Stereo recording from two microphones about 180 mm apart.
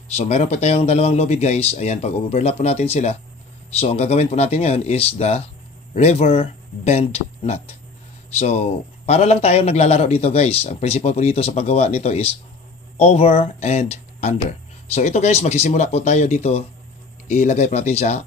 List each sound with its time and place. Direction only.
0.1 s a man's voice: 35° left (ahead or behind)